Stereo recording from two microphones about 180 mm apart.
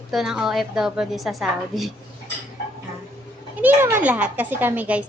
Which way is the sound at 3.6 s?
10° right (ahead or behind).